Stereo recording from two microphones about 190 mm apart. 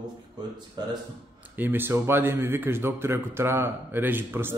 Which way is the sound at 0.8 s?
25° right (ahead or behind).